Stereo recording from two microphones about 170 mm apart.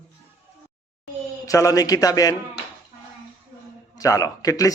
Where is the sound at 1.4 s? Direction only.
20° left (ahead or behind).